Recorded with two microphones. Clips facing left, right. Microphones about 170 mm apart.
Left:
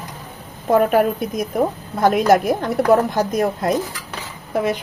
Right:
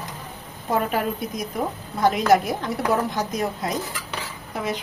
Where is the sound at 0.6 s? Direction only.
55° left (ahead or behind).